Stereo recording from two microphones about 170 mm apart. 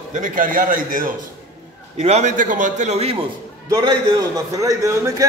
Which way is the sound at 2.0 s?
40° right (ahead or behind).